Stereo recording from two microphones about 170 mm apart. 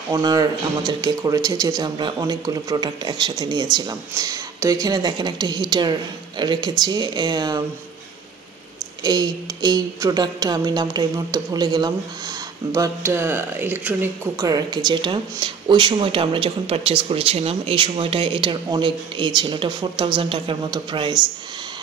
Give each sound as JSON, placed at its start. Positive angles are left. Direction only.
{"t": 0.1, "sound": "speech", "side_deg": -25}
{"t": 9.0, "sound": "speech", "side_deg": -25}